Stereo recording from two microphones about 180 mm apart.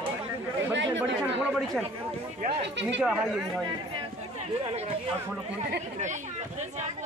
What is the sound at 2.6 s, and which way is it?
Speech, 80° right.